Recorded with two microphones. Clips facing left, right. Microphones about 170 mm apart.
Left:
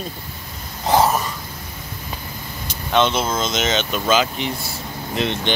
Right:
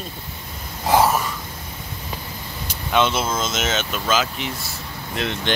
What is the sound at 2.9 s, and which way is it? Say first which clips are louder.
Speech: left 2 dB; 5° right (ahead or behind).